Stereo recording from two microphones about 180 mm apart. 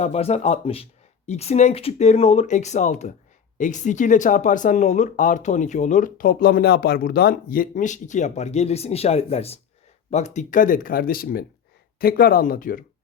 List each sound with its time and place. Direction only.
0.0 s speech: 35° left (ahead or behind)